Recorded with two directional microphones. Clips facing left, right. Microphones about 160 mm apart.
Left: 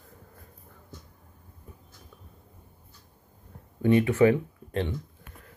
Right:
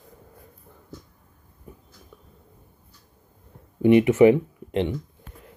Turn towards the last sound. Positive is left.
turn(degrees=-20)  # may be behind; listen again after turning